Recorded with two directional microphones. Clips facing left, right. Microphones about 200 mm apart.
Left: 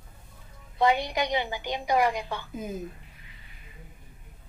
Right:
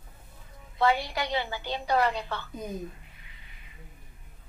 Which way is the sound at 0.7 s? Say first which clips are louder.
Left 2 dB; 15° left (ahead or behind).